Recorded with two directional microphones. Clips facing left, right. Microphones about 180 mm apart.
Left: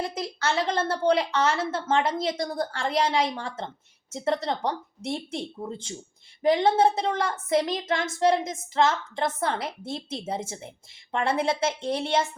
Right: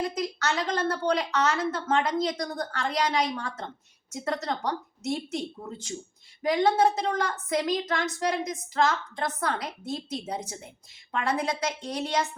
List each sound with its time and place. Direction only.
0.1 s a woman's voice: 30° left (ahead or behind)